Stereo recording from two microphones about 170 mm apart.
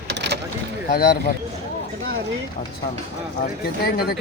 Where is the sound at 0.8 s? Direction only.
65° left (ahead or behind).